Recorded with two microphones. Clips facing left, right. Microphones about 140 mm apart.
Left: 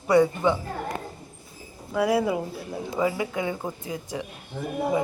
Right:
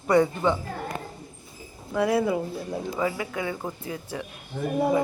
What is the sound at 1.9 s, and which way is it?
Speech, 5° left (ahead or behind).